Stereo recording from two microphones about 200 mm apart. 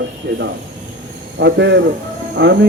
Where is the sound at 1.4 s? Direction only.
60° right (ahead or behind).